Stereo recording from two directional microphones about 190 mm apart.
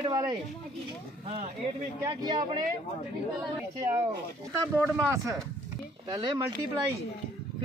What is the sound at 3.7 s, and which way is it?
Speech, 15° right (ahead or behind).